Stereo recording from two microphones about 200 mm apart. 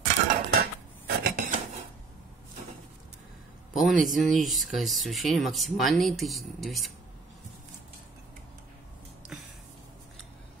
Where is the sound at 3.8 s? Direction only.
Centre (ahead or behind).